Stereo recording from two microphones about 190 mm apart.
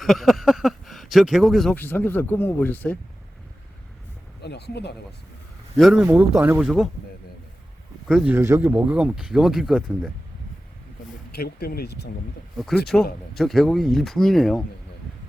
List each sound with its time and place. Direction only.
0.0 s speech: centre (ahead or behind)
4.4 s speech: 60° left (ahead or behind)
5.7 s speech: centre (ahead or behind)
8.0 s speech: 5° right (ahead or behind)
11.3 s speech: 55° left (ahead or behind)
12.9 s speech: 5° left (ahead or behind)